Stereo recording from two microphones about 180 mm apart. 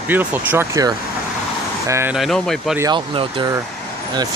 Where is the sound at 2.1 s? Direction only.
Centre (ahead or behind).